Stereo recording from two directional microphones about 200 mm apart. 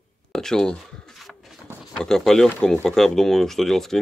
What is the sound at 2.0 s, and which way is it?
Speech, 5° left (ahead or behind).